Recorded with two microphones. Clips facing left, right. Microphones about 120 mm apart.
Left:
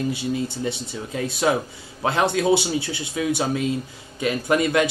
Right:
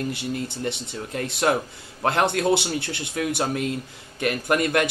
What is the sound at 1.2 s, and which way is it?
A man's voice, 5° left (ahead or behind).